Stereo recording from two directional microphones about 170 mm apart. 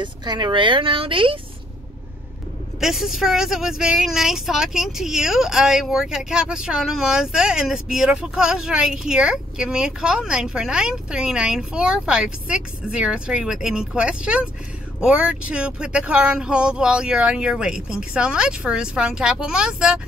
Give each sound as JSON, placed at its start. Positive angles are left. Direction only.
{"t": 0.0, "sound": "speech", "side_deg": -25}
{"t": 2.8, "sound": "speech", "side_deg": 0}